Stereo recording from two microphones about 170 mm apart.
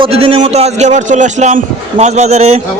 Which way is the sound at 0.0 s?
35° right (ahead or behind).